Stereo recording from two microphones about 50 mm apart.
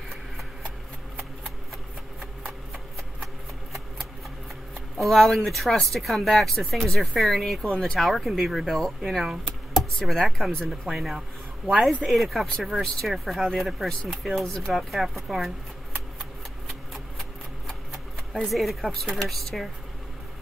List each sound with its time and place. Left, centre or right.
4.9 s speech: centre
17.2 s a sound: centre
18.5 s speech: centre